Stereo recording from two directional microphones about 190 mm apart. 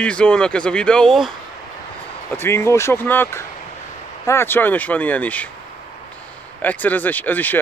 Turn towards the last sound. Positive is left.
turn(degrees=10)  # may be behind; listen again after turning